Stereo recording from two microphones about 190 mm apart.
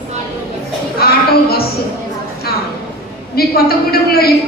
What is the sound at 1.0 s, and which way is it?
Speech, 55° left (ahead or behind).